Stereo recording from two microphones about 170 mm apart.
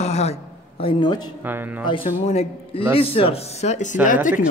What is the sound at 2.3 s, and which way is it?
A woman's voice, 40° left (ahead or behind).